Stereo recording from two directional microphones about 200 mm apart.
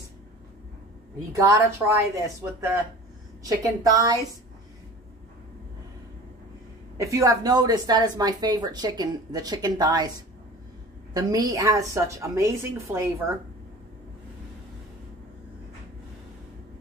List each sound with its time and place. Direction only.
1.3 s a woman's voice: 15° right (ahead or behind)
7.0 s a woman's voice: 15° right (ahead or behind)
11.1 s a woman's voice: 20° right (ahead or behind)